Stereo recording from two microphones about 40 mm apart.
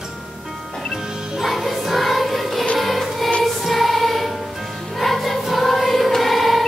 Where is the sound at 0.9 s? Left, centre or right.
Centre.